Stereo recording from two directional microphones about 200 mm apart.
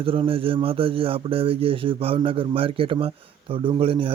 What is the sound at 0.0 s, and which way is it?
A man's voice, 25° right (ahead or behind).